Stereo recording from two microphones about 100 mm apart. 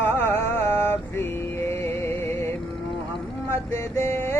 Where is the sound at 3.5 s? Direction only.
25° left (ahead or behind).